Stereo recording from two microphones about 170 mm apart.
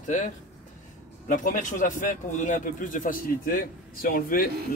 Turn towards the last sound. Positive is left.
turn(degrees=55)  # may be behind; listen again after turning